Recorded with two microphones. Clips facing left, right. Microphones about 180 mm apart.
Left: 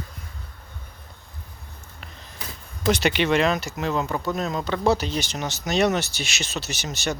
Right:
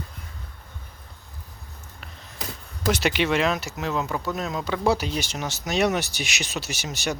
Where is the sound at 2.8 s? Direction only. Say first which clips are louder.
Left 2 dB; 5° right (ahead or behind).